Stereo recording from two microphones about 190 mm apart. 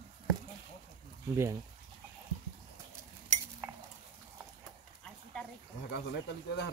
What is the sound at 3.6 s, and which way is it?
Cutlery, 15° right (ahead or behind).